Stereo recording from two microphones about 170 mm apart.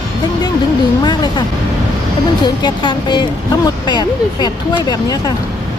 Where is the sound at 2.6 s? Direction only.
25° left (ahead or behind).